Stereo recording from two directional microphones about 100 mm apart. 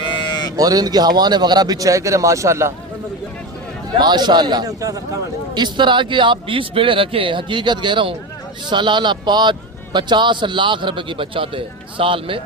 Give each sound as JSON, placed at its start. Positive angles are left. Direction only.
{"t": 0.2, "sound": "sheep", "side_deg": 45}
{"t": 0.5, "sound": "a man's voice", "side_deg": -40}
{"t": 3.9, "sound": "a man's voice", "side_deg": -45}
{"t": 5.5, "sound": "a man's voice", "side_deg": -50}